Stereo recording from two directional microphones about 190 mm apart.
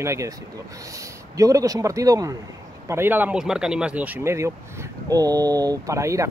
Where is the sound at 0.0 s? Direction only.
15° right (ahead or behind).